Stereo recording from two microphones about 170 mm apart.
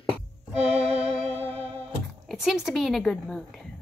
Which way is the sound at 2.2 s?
Centre (ahead or behind).